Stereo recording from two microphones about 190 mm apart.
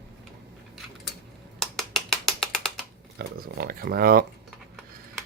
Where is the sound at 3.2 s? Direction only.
55° right (ahead or behind).